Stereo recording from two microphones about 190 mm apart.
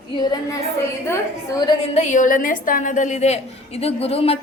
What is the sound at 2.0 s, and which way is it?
A woman's voice, 40° left (ahead or behind).